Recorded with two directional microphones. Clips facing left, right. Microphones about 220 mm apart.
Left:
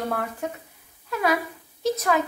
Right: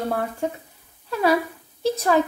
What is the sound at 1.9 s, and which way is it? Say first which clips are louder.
Speech: right 5 dB; 30° right (ahead or behind).